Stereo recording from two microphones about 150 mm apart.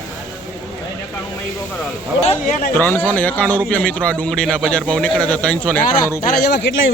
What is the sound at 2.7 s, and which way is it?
A man's voice, 15° left (ahead or behind).